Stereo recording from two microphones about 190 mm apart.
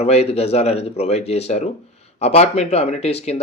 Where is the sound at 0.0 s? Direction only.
35° left (ahead or behind).